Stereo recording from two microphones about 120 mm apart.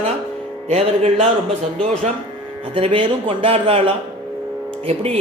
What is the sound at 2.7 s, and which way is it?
Speech, 50° right (ahead or behind).